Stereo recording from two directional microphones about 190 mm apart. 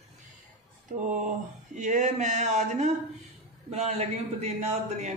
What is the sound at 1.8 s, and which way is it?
Speech, 40° right (ahead or behind).